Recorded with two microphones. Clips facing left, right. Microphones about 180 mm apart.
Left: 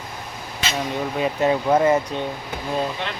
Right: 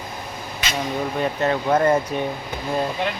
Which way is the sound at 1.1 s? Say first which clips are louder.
Left 3 dB; 5° left (ahead or behind).